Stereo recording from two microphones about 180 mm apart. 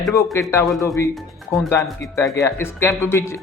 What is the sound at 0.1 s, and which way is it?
Speech, 15° left (ahead or behind).